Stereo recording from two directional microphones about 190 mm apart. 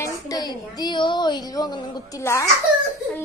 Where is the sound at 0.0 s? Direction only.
20° left (ahead or behind).